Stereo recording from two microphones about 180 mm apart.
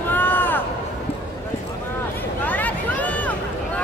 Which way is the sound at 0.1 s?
10° left (ahead or behind).